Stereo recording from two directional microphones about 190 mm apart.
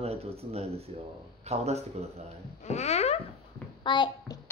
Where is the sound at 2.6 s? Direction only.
35° left (ahead or behind).